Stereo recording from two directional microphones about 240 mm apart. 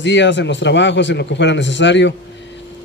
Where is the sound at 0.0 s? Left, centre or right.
Left.